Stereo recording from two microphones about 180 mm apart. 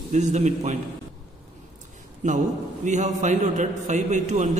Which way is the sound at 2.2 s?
45° right (ahead or behind).